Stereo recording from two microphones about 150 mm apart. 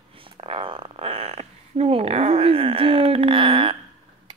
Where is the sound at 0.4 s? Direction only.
35° right (ahead or behind).